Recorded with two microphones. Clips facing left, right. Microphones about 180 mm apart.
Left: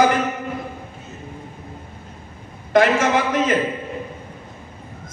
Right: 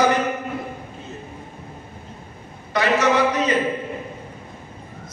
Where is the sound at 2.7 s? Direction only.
45° left (ahead or behind).